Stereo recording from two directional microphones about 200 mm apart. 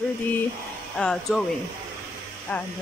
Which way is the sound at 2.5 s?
10° left (ahead or behind).